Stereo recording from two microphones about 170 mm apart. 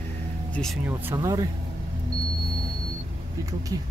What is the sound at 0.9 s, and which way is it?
Speech, 10° right (ahead or behind).